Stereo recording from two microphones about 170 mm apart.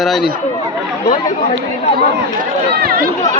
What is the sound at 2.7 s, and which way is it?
Speech, 60° right (ahead or behind).